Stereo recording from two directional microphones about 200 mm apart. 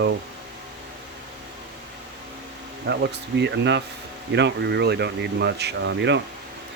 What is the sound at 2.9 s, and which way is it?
Speech, 65° right (ahead or behind).